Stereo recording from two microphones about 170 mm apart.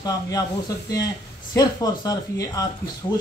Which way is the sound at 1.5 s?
20° left (ahead or behind).